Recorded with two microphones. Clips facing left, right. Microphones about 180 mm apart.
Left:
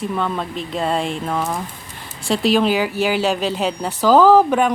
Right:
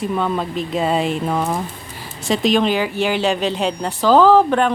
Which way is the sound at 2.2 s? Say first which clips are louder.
Even; centre (ahead or behind).